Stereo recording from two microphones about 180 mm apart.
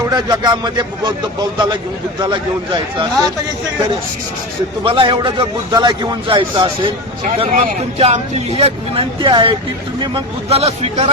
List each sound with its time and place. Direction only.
0.1 s a man's voice: 25° right (ahead or behind)
2.2 s a man's voice: 25° right (ahead or behind)
4.8 s a man's voice: 25° right (ahead or behind)